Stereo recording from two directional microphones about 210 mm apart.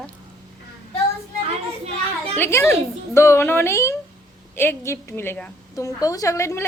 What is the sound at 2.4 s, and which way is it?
A woman's voice, 10° left (ahead or behind).